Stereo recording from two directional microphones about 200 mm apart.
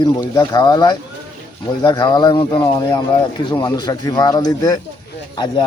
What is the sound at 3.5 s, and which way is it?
Speech, 20° left (ahead or behind).